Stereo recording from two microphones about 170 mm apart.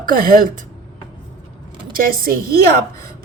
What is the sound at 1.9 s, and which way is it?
Speech, 55° right (ahead or behind).